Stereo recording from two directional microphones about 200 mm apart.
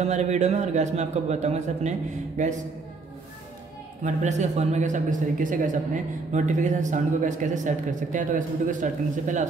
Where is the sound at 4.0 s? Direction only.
35° right (ahead or behind).